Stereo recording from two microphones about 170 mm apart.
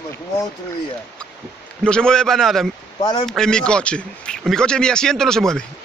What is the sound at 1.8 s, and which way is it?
Speech, 5° left (ahead or behind).